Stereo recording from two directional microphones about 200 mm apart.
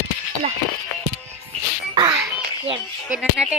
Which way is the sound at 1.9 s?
20° right (ahead or behind).